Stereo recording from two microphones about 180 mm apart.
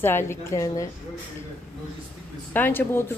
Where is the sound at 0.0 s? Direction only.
15° left (ahead or behind).